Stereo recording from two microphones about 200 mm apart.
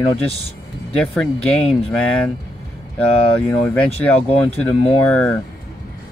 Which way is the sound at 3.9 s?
30° left (ahead or behind).